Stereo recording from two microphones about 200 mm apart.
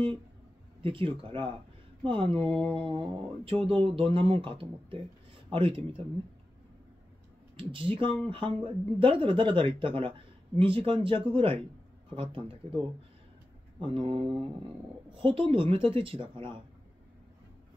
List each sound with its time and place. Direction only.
0.8 s speech: 25° right (ahead or behind)
7.5 s speech: 25° right (ahead or behind)